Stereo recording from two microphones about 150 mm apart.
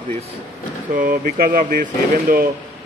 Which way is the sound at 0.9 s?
70° right (ahead or behind).